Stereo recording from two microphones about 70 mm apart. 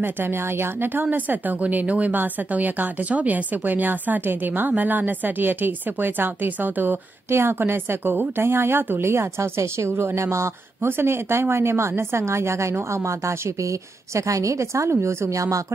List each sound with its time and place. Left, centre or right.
0.0 s a woman's voice: right